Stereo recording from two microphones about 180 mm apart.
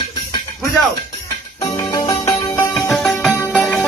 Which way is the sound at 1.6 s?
15° left (ahead or behind).